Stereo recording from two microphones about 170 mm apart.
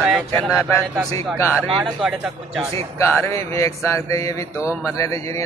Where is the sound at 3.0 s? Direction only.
15° left (ahead or behind).